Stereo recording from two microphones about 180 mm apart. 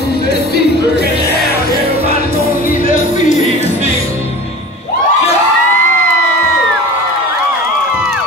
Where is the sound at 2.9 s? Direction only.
45° left (ahead or behind).